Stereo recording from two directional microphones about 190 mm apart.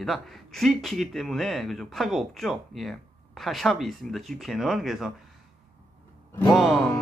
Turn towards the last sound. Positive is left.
turn(degrees=0)  # may be behind; listen again after turning